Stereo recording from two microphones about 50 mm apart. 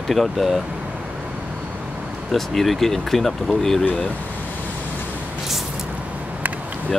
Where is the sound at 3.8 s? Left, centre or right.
Left.